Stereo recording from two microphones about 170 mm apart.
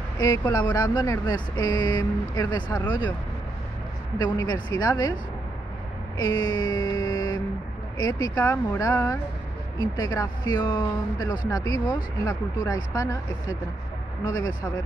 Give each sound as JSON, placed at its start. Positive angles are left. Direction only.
{"t": 0.2, "sound": "speech", "side_deg": 20}
{"t": 4.2, "sound": "speech", "side_deg": 25}
{"t": 6.1, "sound": "a sound", "side_deg": 25}
{"t": 8.0, "sound": "speech", "side_deg": 20}